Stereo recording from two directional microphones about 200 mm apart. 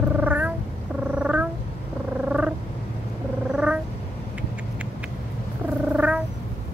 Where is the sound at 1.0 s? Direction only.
5° right (ahead or behind).